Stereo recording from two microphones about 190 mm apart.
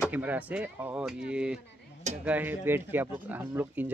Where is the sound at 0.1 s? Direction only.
10° right (ahead or behind).